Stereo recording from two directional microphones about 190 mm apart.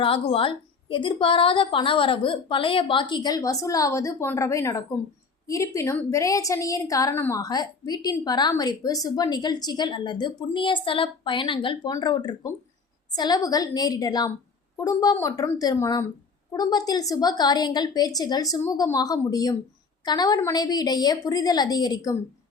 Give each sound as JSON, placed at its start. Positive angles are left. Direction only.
{"t": 0.0, "sound": "a woman's voice", "side_deg": 30}